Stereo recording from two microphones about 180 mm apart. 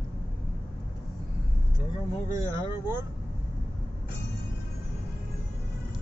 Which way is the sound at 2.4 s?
20° right (ahead or behind).